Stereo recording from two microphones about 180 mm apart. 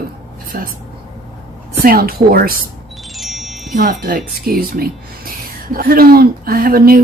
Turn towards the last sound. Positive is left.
turn(degrees=-55)  # may be behind; listen again after turning